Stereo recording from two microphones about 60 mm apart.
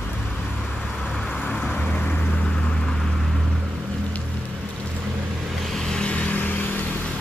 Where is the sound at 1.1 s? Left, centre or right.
Centre.